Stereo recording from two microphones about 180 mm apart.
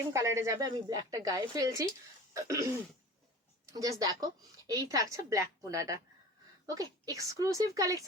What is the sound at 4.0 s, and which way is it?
Speech, 20° right (ahead or behind).